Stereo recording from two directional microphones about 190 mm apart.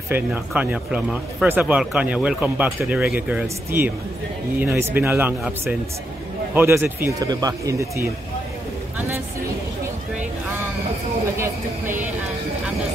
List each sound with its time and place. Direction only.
0.1 s speech: 10° right (ahead or behind)
6.5 s speech: 10° right (ahead or behind)
11.3 s a sound: 15° right (ahead or behind)